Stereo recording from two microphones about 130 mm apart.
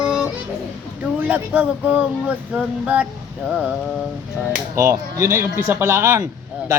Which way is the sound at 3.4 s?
5° right (ahead or behind).